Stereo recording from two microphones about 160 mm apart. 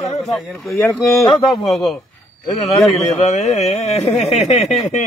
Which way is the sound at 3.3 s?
45° left (ahead or behind).